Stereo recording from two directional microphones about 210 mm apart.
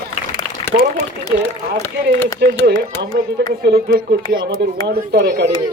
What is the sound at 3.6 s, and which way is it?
A child's voice, 45° right (ahead or behind).